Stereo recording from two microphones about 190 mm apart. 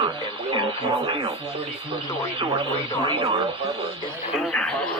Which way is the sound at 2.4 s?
25° right (ahead or behind).